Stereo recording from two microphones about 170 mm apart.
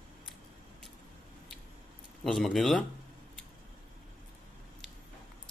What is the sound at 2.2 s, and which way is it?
Speech, centre (ahead or behind).